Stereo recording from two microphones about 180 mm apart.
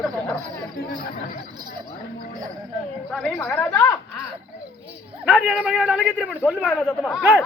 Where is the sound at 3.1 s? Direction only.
5° left (ahead or behind).